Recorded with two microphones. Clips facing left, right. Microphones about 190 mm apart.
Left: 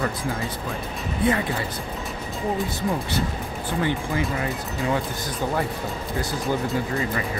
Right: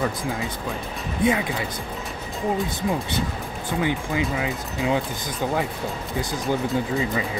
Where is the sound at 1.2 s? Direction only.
15° right (ahead or behind).